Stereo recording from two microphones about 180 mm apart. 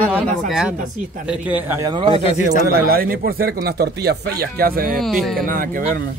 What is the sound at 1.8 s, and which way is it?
Speech, 30° right (ahead or behind).